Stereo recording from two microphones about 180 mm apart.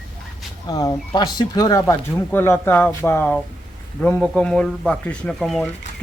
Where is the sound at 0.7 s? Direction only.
20° left (ahead or behind).